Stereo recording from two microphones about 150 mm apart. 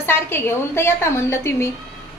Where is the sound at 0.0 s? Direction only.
15° left (ahead or behind).